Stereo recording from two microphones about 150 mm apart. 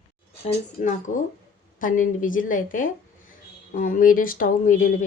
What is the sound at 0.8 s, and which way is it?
Speech, 60° left (ahead or behind).